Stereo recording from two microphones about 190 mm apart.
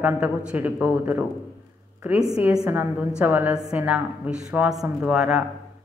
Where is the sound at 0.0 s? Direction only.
5° right (ahead or behind).